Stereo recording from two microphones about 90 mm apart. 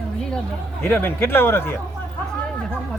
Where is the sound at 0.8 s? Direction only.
25° left (ahead or behind).